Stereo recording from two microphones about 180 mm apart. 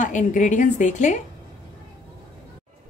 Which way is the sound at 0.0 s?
45° left (ahead or behind).